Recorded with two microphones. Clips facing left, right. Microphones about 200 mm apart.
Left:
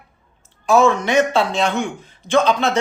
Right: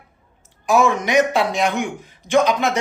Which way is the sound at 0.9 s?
15° right (ahead or behind).